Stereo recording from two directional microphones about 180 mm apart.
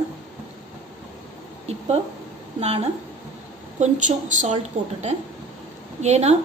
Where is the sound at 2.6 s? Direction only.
35° right (ahead or behind).